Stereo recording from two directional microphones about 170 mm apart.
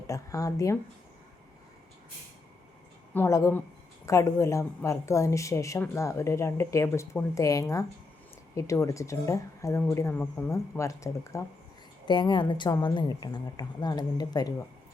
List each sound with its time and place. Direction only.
0.1 s a woman's voice: 20° left (ahead or behind)
3.2 s a woman's voice: 20° left (ahead or behind)